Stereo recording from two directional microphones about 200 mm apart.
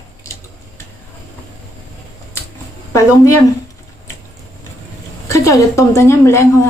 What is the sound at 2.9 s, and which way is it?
Speech, 15° left (ahead or behind).